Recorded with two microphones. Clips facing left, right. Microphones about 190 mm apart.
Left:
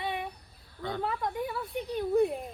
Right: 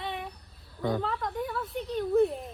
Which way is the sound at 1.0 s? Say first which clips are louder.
Even; 5° left (ahead or behind).